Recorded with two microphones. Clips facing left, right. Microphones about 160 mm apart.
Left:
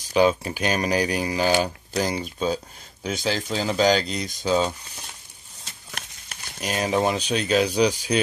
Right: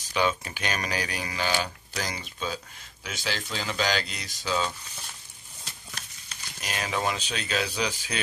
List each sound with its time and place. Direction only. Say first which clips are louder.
0.1 s speech: left 8 dB; 35° left (ahead or behind)
6.6 s speech: left 7 dB; 40° left (ahead or behind)